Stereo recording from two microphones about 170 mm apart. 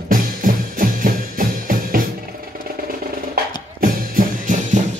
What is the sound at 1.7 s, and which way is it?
Music, 55° right (ahead or behind).